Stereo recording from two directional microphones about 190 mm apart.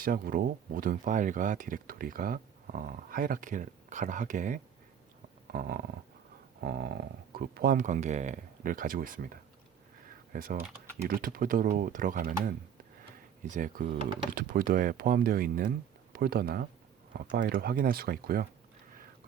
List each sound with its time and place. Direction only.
0.0 s speech: 50° right (ahead or behind)
5.5 s a sound: 50° right (ahead or behind)
6.7 s speech: 55° right (ahead or behind)